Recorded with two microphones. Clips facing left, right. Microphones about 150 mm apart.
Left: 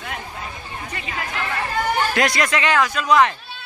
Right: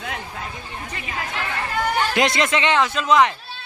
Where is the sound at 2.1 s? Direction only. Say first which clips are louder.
Right 1 dB; 20° right (ahead or behind).